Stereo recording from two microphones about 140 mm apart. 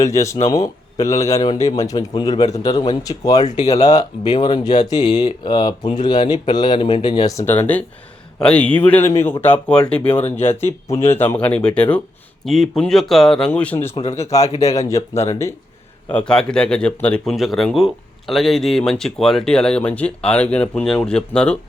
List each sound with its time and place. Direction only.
0.0 s a man's voice: 20° left (ahead or behind)
3.4 s speech: 55° left (ahead or behind)
3.7 s a man's voice: 25° left (ahead or behind); by 10.2 s 10° left (ahead or behind)
10.8 s a man's voice: 20° left (ahead or behind)
16.0 s speech: 10° left (ahead or behind)